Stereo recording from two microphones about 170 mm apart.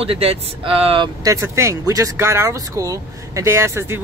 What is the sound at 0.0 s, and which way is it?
Speech, 35° right (ahead or behind).